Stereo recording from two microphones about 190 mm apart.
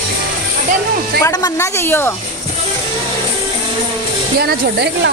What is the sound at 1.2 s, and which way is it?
Speech, 15° left (ahead or behind).